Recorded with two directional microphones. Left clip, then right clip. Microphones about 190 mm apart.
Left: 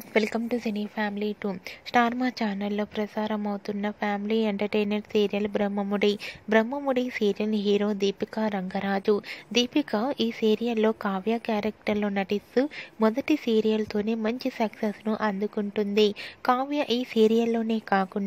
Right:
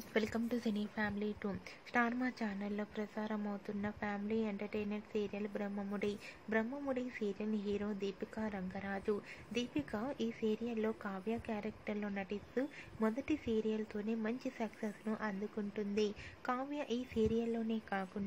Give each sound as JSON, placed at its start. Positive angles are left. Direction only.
{"t": 0.1, "sound": "a woman's voice", "side_deg": 35}